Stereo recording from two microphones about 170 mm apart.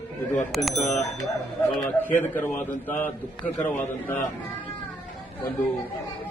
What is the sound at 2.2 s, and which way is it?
A man's voice, 10° left (ahead or behind).